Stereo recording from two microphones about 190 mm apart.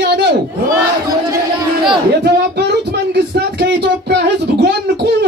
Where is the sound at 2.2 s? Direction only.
60° right (ahead or behind).